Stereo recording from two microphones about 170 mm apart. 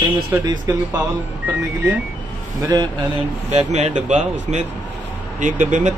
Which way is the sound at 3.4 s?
40° right (ahead or behind).